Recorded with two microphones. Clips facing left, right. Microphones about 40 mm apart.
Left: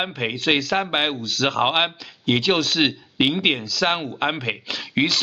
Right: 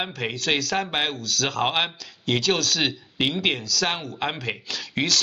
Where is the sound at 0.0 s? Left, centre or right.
Left.